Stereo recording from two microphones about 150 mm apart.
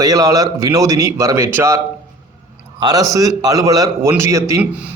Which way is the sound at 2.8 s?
25° right (ahead or behind).